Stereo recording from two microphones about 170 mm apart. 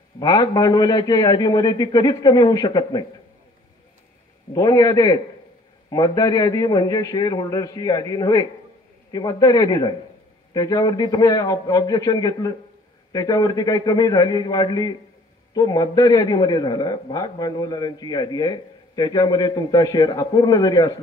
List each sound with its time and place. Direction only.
0.2 s a man's voice: 25° left (ahead or behind)
4.6 s a man's voice: 20° left (ahead or behind)